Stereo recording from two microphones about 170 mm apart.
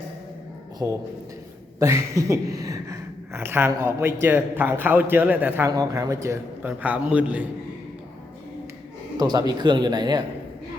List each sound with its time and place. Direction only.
0.8 s speech: 15° right (ahead or behind)
9.1 s speech: 25° right (ahead or behind)